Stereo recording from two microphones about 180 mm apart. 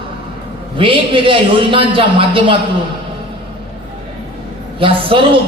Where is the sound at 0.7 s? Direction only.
30° right (ahead or behind).